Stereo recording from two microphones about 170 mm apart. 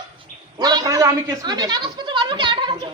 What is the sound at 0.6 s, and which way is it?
A man's voice, 25° right (ahead or behind).